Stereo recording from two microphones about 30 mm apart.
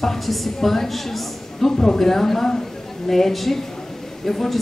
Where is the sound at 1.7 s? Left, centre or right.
Centre.